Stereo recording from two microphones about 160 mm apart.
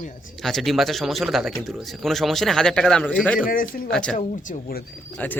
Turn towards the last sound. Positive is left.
turn(degrees=10)  # may be behind; listen again after turning